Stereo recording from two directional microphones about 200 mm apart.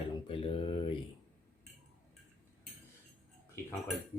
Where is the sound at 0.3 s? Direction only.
25° left (ahead or behind).